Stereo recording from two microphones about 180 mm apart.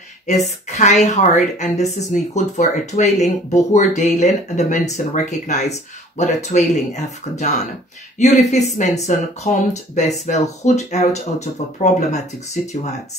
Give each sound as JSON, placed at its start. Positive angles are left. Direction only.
{"t": 0.3, "sound": "speech", "side_deg": 40}